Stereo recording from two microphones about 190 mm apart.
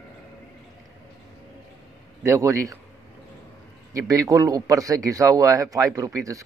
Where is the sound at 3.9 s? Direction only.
20° right (ahead or behind).